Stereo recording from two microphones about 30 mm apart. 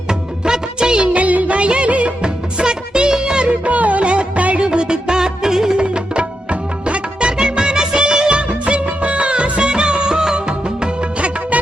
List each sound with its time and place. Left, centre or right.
0.1 s music of bollywood: right
1.1 s music of bollywood: right
1.5 s music of bollywood: right
2.2 s music: right
3.6 s music: right
4.0 s music: right; by 5.7 s centre
5.7 s music: right
11.5 s music: right